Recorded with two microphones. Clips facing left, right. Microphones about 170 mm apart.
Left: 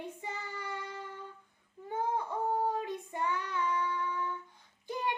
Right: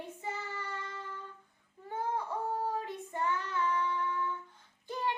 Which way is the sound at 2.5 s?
15° left (ahead or behind).